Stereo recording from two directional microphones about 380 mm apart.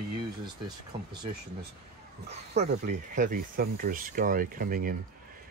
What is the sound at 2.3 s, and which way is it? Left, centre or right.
Speech, centre.